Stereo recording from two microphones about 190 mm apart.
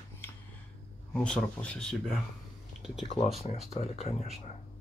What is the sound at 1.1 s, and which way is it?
Speech, 5° left (ahead or behind).